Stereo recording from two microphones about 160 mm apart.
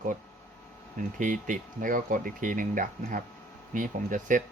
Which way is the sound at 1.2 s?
55° right (ahead or behind).